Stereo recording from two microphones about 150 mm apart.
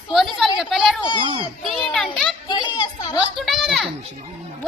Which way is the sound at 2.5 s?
30° left (ahead or behind).